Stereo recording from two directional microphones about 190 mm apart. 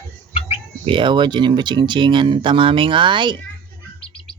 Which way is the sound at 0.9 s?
25° right (ahead or behind).